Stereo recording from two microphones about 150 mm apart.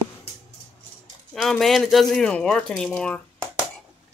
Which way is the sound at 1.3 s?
Centre (ahead or behind).